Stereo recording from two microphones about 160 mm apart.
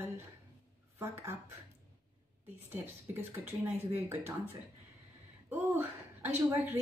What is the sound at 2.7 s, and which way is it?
Speech, 15° right (ahead or behind).